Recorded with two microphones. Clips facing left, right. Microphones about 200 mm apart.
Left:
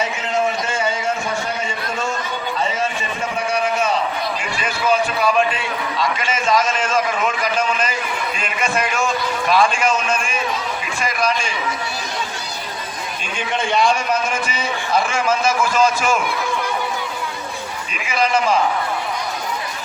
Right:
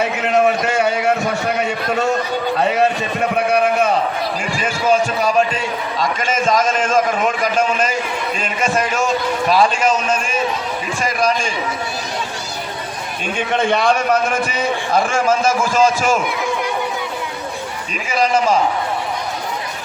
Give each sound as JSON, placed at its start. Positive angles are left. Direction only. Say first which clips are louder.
{"t": 0.0, "sound": "a sound", "louder": "right 5 dB", "side_deg": -60}
{"t": 4.5, "sound": "a man's voice", "louder": "right 3 dB", "side_deg": -45}
{"t": 13.5, "sound": "a man's voice", "louder": "right 2 dB", "side_deg": -55}
{"t": 18.1, "sound": "a man's voice", "louder": "right 2 dB", "side_deg": -40}